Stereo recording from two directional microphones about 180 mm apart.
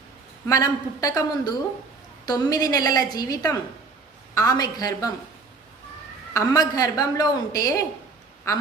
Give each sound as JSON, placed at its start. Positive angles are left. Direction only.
{"t": 0.4, "sound": "a woman's voice", "side_deg": 20}
{"t": 6.3, "sound": "a woman's voice", "side_deg": 20}